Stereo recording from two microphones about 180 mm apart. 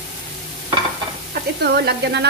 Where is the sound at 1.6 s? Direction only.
65° right (ahead or behind).